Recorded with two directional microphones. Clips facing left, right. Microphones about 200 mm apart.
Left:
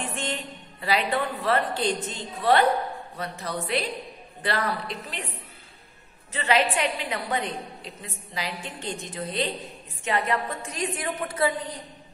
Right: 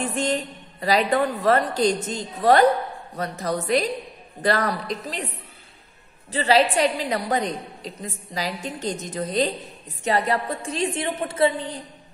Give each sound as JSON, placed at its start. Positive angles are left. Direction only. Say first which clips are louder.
{"t": 0.0, "sound": "a woman's voice", "louder": "right 7 dB", "side_deg": -40}
{"t": 6.3, "sound": "a woman's voice", "louder": "right 5 dB", "side_deg": -35}